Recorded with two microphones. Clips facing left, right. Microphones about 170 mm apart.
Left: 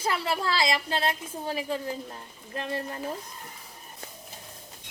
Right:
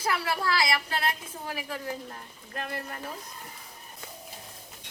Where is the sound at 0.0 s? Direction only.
25° left (ahead or behind).